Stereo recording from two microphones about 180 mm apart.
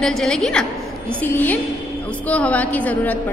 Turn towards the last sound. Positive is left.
turn(degrees=10)  # may be behind; listen again after turning